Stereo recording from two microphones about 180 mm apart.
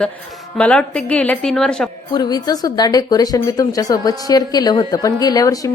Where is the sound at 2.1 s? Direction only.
20° left (ahead or behind).